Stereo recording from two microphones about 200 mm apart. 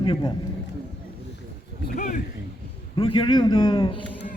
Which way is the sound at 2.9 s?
25° left (ahead or behind).